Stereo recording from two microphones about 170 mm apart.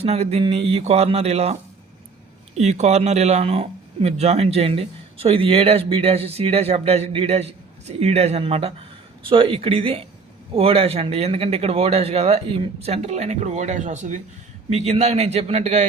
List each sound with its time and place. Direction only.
0.0 s speech: 40° right (ahead or behind)
2.6 s speech: 40° right (ahead or behind)